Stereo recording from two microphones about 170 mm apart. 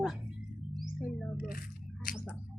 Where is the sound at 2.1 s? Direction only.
5° left (ahead or behind).